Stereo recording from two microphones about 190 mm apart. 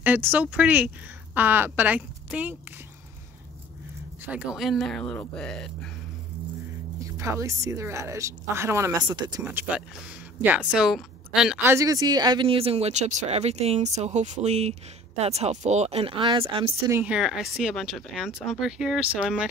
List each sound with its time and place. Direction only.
0.0 s a woman's voice: 10° right (ahead or behind)
4.3 s speech: 5° right (ahead or behind)
7.0 s a woman's voice: 15° right (ahead or behind)
9.4 s a woman's voice: 10° right (ahead or behind); by 16.8 s 30° right (ahead or behind)
16.9 s speech: 5° right (ahead or behind)